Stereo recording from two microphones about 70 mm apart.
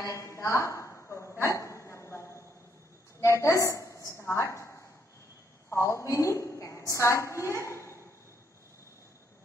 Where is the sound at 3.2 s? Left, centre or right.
Left.